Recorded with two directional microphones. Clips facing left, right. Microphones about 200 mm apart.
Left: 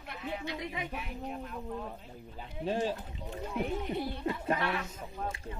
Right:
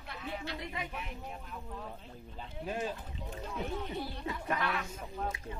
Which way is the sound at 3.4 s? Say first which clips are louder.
Left 4 dB; 15° left (ahead or behind).